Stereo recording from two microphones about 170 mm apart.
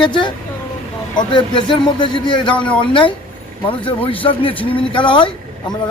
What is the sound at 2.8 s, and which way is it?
A man's voice, 30° left (ahead or behind).